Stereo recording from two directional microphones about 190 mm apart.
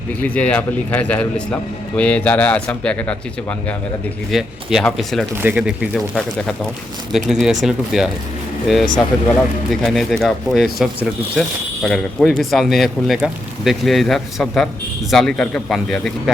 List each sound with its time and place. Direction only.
0.2 s speech: 5° left (ahead or behind)
4.3 s speech: centre (ahead or behind)
5.4 s speech: 10° right (ahead or behind)